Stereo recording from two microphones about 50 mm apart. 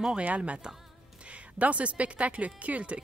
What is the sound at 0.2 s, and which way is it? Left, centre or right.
Speech, right.